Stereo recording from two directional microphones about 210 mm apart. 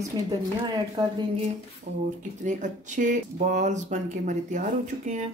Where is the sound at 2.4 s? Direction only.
35° right (ahead or behind).